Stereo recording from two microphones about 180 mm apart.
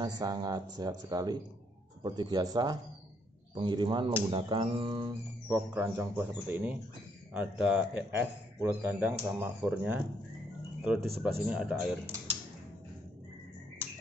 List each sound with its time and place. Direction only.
0.0 s speech: 20° right (ahead or behind)
5.5 s speech: 10° right (ahead or behind)
11.0 s speech: 60° right (ahead or behind)
11.4 s speech: 5° right (ahead or behind)
13.8 s music: 15° right (ahead or behind)